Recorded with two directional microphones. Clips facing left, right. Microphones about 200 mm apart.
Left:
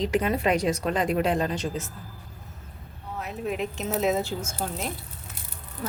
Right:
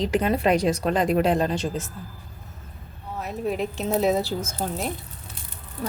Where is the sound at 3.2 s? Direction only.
35° right (ahead or behind).